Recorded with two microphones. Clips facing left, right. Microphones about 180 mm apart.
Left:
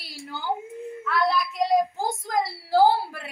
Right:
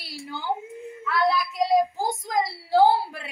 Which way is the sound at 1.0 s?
Centre (ahead or behind).